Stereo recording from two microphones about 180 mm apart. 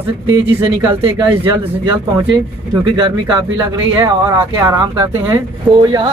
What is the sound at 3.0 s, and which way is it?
Speech, 25° right (ahead or behind).